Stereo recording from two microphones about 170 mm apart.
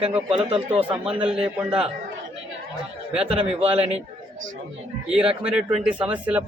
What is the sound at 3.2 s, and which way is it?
Speech, 35° right (ahead or behind).